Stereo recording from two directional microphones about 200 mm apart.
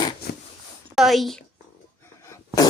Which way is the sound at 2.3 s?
15° left (ahead or behind).